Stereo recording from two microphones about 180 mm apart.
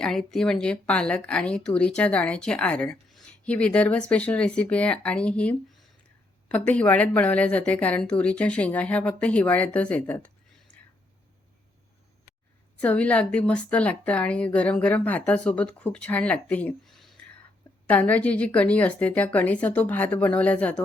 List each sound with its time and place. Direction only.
0.0 s a woman's voice: 5° left (ahead or behind)
12.7 s a woman's voice: 10° left (ahead or behind)